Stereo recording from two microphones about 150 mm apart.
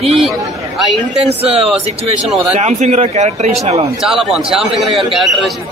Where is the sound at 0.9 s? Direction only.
45° right (ahead or behind).